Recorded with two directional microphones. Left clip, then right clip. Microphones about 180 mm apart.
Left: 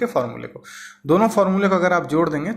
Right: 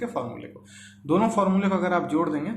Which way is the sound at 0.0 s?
35° left (ahead or behind).